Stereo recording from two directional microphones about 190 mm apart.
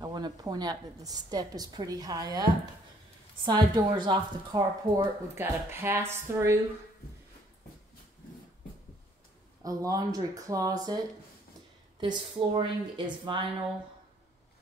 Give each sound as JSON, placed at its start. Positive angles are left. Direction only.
{"t": 0.0, "sound": "a woman's voice", "side_deg": -20}
{"t": 3.4, "sound": "speech", "side_deg": -25}
{"t": 9.6, "sound": "a woman's voice", "side_deg": -20}
{"t": 12.0, "sound": "a woman's voice", "side_deg": -25}